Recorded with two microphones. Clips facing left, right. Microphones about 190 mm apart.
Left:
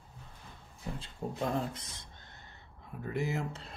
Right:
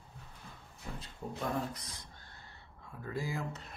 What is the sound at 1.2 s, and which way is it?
Speech, 30° left (ahead or behind).